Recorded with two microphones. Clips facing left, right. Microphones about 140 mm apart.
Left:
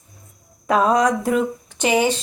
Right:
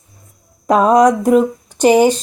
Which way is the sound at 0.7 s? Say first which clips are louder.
Right 6 dB; 45° right (ahead or behind).